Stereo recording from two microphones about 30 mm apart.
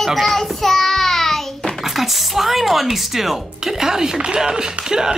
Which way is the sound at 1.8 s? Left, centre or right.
Centre.